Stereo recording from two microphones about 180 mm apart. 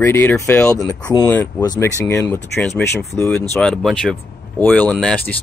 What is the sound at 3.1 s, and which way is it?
Speech, 10° left (ahead or behind).